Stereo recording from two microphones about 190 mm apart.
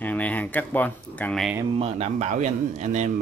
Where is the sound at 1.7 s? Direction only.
30° right (ahead or behind).